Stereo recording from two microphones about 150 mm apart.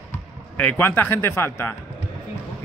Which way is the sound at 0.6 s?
10° left (ahead or behind).